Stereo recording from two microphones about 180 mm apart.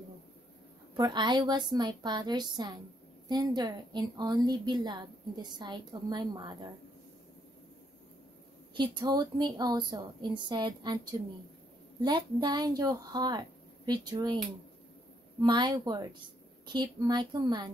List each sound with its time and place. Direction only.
0.9 s a woman's voice: 25° right (ahead or behind)
8.7 s a woman's voice: 25° right (ahead or behind)
15.4 s a woman's voice: 25° right (ahead or behind)